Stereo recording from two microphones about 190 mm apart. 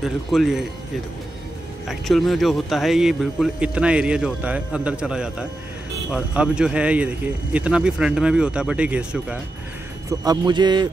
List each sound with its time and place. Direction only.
0.0 s speech: centre (ahead or behind)
1.9 s speech: centre (ahead or behind)
10.0 s a man's voice: 20° right (ahead or behind)